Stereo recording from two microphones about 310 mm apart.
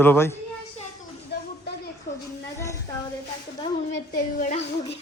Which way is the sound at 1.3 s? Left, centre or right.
Left.